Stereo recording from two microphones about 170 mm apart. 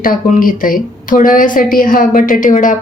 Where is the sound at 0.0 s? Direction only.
55° left (ahead or behind).